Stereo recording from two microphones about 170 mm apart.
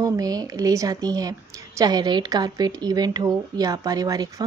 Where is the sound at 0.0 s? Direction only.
20° right (ahead or behind).